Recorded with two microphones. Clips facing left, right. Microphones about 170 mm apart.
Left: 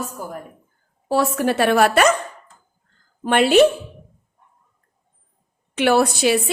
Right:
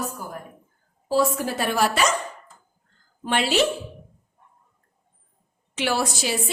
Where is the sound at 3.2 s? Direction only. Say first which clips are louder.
Left 8 dB; 55° left (ahead or behind).